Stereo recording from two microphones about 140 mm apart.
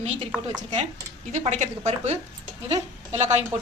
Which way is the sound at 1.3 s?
55° right (ahead or behind).